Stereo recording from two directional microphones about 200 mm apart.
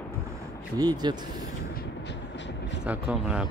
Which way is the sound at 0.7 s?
20° right (ahead or behind).